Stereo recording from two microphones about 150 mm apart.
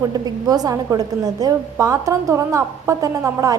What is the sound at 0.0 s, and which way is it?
A woman's voice, 25° right (ahead or behind).